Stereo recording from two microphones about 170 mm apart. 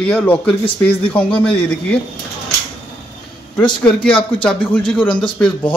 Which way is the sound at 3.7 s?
5° left (ahead or behind).